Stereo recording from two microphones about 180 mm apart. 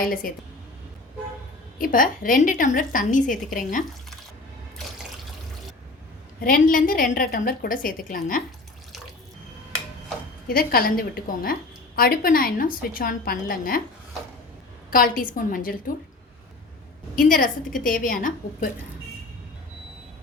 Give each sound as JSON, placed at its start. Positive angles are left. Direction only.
{"t": 0.0, "sound": "a woman's voice", "side_deg": 50}
{"t": 1.8, "sound": "a woman's voice", "side_deg": 50}
{"t": 4.8, "sound": "water", "side_deg": 0}
{"t": 6.4, "sound": "a woman's voice", "side_deg": 50}
{"t": 10.5, "sound": "a woman's voice", "side_deg": 55}
{"t": 14.8, "sound": "a woman's voice", "side_deg": 50}
{"t": 17.2, "sound": "a woman's voice", "side_deg": 50}